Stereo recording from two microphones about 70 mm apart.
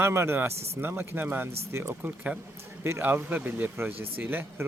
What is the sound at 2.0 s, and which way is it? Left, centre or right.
Speech, right.